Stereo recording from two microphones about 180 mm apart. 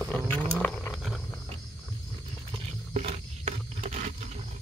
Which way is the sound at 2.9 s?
35° right (ahead or behind).